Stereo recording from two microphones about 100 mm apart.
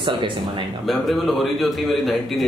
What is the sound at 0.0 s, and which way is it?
Speech, 50° right (ahead or behind).